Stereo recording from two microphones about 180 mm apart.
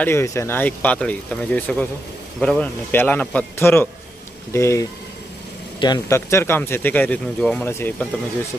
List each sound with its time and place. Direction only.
0.0 s speech: 15° left (ahead or behind)